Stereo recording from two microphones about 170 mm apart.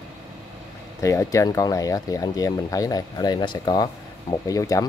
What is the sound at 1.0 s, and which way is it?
Speech, 20° left (ahead or behind).